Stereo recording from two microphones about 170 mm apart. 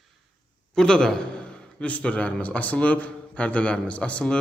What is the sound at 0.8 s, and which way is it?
A man's voice, 5° left (ahead or behind).